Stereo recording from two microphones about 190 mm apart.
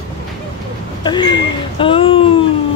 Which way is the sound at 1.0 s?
25° left (ahead or behind).